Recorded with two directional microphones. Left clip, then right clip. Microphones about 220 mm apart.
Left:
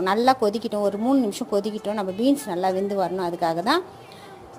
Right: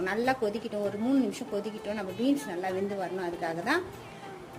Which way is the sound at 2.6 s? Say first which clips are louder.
Left 9 dB; 20° left (ahead or behind).